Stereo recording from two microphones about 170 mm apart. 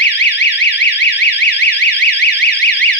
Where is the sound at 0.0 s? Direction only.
90° left.